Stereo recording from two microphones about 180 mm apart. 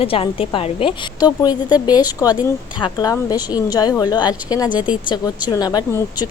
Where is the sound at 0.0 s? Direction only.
30° left (ahead or behind).